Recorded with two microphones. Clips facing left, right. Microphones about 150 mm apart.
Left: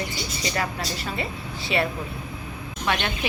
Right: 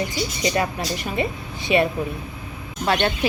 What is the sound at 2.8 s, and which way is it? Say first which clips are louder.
Speech: right 5 dB; 35° right (ahead or behind).